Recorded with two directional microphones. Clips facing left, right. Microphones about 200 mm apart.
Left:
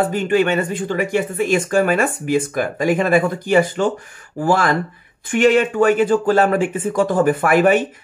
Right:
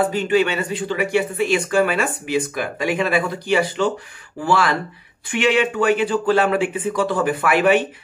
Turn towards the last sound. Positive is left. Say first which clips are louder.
# left 2 dB
turn(degrees=45)  # may be behind; listen again after turning